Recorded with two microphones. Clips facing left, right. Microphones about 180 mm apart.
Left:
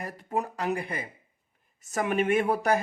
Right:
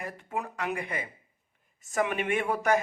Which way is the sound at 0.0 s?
40° left (ahead or behind).